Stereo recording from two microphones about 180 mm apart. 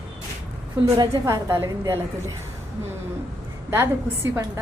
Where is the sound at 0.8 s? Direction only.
20° right (ahead or behind).